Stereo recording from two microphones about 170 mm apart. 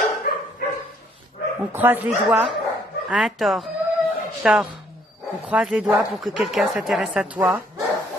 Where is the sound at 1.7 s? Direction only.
10° right (ahead or behind).